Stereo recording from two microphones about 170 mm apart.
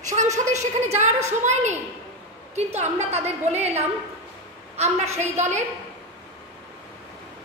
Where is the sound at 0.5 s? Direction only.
40° right (ahead or behind).